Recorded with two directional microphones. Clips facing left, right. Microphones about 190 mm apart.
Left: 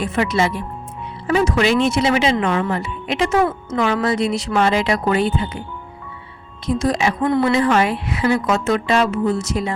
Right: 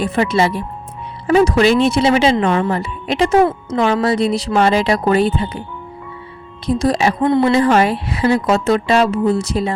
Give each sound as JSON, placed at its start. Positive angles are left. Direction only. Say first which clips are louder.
{"t": 0.0, "sound": "speech", "louder": "right 3 dB", "side_deg": -35}
{"t": 6.7, "sound": "speech", "louder": "right 3 dB", "side_deg": -35}